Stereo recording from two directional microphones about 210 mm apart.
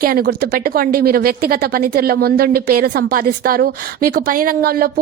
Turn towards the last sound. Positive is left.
turn(degrees=-45)  # may be behind; listen again after turning